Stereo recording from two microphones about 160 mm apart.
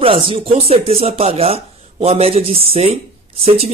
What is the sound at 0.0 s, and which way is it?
Speech, 35° right (ahead or behind).